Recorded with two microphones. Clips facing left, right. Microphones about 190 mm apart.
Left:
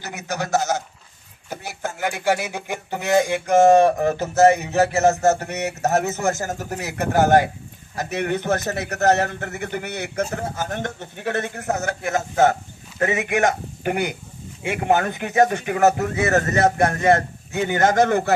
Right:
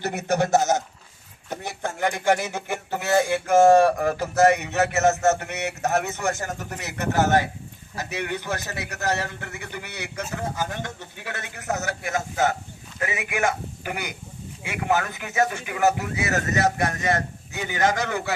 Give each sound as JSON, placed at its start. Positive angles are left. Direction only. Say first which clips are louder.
{"t": 0.0, "sound": "a man's voice", "louder": "right 5 dB", "side_deg": -55}
{"t": 0.4, "sound": "a man's voice", "louder": "right 1 dB", "side_deg": -20}
{"t": 1.5, "sound": "a sound", "louder": "even", "side_deg": 5}
{"t": 2.0, "sound": "a man's voice", "louder": "even", "side_deg": 5}
{"t": 15.6, "sound": "a man's voice", "louder": "left 5 dB", "side_deg": 45}